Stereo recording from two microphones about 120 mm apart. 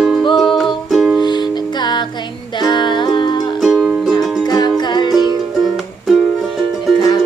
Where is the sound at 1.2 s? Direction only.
40° left (ahead or behind).